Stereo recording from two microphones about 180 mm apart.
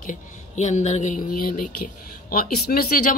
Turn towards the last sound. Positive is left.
turn(degrees=55)  # may be behind; listen again after turning